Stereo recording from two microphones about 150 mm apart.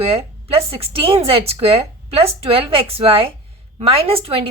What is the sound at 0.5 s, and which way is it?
Speech, 40° right (ahead or behind).